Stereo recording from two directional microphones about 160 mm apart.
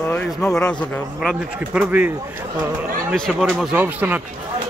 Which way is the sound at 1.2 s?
10° right (ahead or behind).